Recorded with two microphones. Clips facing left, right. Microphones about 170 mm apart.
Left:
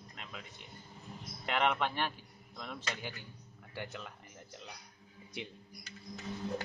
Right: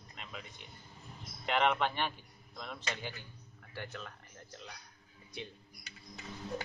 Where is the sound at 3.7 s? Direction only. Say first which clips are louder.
Left 1 dB; 15° left (ahead or behind).